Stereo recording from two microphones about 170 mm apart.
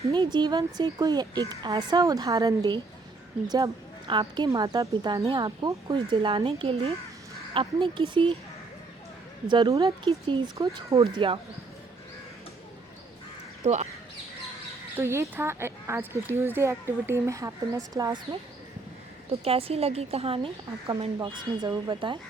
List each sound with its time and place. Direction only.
0.1 s a woman's voice: 25° right (ahead or behind)
9.5 s a woman's voice: 25° right (ahead or behind)
13.6 s a woman's voice: 40° right (ahead or behind)
14.9 s speech: 15° right (ahead or behind)
19.3 s a woman's voice: 35° right (ahead or behind)